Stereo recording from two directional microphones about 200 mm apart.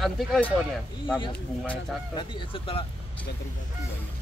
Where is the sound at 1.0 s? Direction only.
25° left (ahead or behind).